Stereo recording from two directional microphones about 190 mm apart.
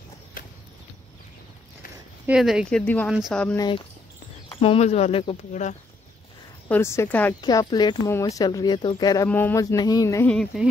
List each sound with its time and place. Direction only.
2.2 s speech: 5° right (ahead or behind)
3.5 s speech: 25° left (ahead or behind); by 5.8 s 40° left (ahead or behind)
6.7 s a sound: 15° left (ahead or behind)
7.4 s speech: 20° left (ahead or behind)
9.3 s a sound: 10° left (ahead or behind)
10.3 s speech: centre (ahead or behind)